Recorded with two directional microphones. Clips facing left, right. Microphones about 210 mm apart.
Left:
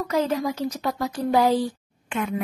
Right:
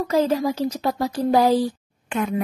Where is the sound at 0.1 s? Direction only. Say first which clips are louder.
Right 4 dB; 30° right (ahead or behind).